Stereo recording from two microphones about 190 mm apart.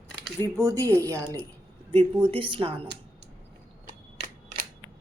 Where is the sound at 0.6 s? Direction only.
15° right (ahead or behind).